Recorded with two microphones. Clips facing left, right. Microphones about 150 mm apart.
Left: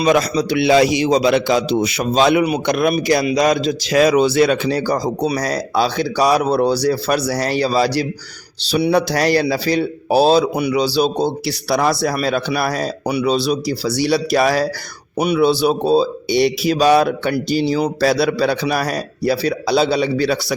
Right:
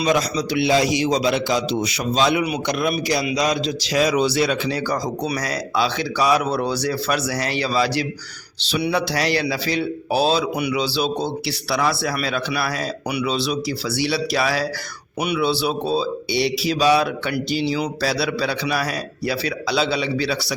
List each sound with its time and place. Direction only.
0.0 s a man's voice: 55° left (ahead or behind)